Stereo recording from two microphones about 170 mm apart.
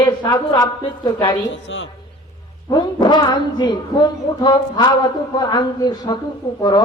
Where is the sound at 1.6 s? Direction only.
90° left.